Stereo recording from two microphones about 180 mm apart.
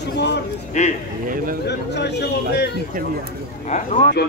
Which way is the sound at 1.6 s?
70° left (ahead or behind).